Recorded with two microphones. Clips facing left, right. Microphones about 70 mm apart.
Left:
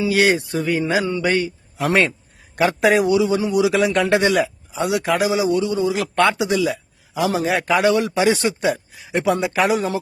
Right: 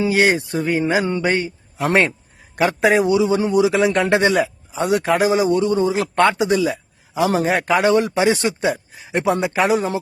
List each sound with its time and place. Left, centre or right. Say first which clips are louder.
0.0 s a man's voice: right 1 dB; right
7.3 s speech: right 1 dB; right